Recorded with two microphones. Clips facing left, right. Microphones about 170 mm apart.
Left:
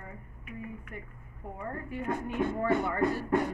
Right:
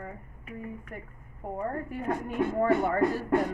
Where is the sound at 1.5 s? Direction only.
40° right (ahead or behind).